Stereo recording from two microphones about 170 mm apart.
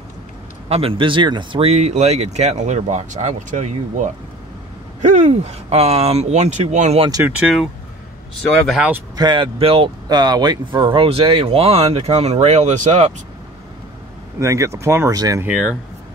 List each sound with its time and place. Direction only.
0.7 s speech: 35° right (ahead or behind)
7.0 s speech: 20° right (ahead or behind)
7.2 s speech: 5° right (ahead or behind)
9.1 s speech: 25° right (ahead or behind); by 13.1 s 40° right (ahead or behind)
14.4 s speech: 20° right (ahead or behind)
15.4 s speech: 5° right (ahead or behind)